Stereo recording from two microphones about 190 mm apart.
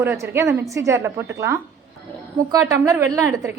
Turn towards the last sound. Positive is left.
turn(degrees=-15)  # may be behind; listen again after turning